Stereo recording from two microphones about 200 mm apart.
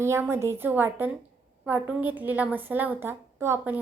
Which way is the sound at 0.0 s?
15° right (ahead or behind).